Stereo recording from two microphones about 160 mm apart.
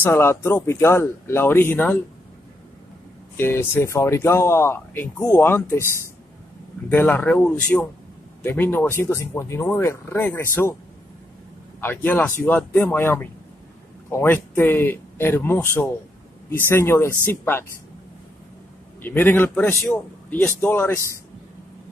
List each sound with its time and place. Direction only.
0.0 s speech: 15° left (ahead or behind)
3.3 s speech: 15° left (ahead or behind)
11.8 s speech: 10° left (ahead or behind)
19.0 s speech: 10° left (ahead or behind)